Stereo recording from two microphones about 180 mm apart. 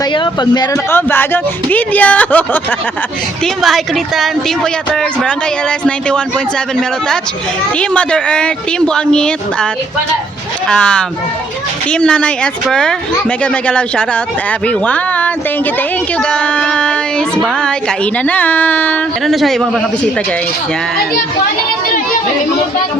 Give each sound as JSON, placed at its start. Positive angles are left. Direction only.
{"t": 0.0, "sound": "a woman's voice", "side_deg": 25}
{"t": 7.8, "sound": "a woman's voice", "side_deg": 5}
{"t": 10.7, "sound": "a woman's voice", "side_deg": 5}